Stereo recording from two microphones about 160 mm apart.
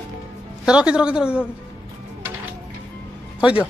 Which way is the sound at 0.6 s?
5° right (ahead or behind).